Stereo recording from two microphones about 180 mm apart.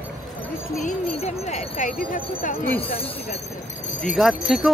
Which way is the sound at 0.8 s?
40° left (ahead or behind).